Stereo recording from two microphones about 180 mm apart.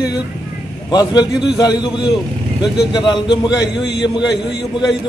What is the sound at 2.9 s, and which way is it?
A man's voice, 25° left (ahead or behind).